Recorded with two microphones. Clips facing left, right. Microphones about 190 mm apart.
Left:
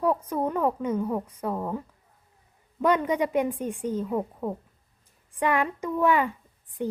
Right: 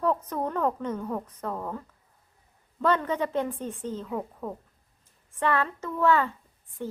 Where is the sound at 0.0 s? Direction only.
10° left (ahead or behind).